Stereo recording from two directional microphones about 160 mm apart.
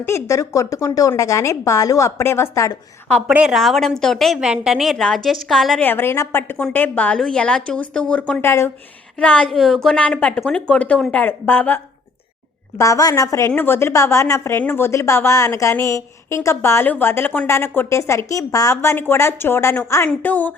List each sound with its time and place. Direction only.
0.0 s a woman's voice: 20° left (ahead or behind)
3.1 s a woman's voice: 5° left (ahead or behind)
5.8 s a woman's voice: 15° left (ahead or behind)